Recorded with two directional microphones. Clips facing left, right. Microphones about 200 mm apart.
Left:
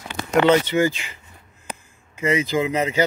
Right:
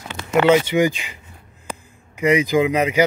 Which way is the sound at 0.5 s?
15° right (ahead or behind).